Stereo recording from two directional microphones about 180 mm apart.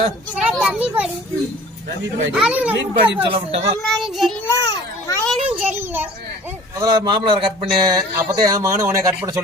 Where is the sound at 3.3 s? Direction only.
30° right (ahead or behind).